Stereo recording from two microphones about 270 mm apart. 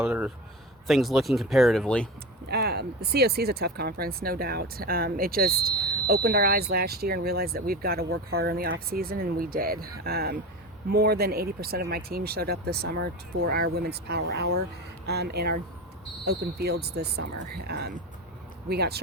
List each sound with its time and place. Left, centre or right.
0.0 s a sound: centre
0.9 s speech: centre
2.5 s speech: right